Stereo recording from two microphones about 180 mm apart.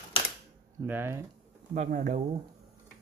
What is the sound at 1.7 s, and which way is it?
Speech, 45° right (ahead or behind).